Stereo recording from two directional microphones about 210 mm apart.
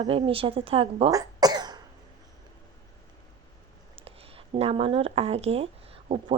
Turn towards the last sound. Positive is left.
turn(degrees=-30)  # may be behind; listen again after turning